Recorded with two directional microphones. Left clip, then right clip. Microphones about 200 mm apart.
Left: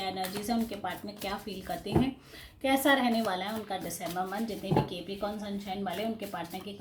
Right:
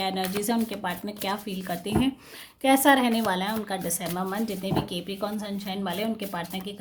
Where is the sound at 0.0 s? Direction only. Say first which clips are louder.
Right 6 dB; 45° right (ahead or behind).